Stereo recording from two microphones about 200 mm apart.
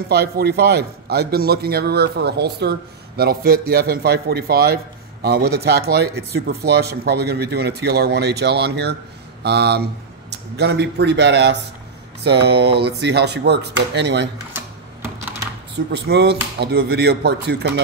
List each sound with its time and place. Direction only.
0.1 s speech: 55° right (ahead or behind)
14.5 s a sound: 10° right (ahead or behind)
15.9 s speech: 55° right (ahead or behind)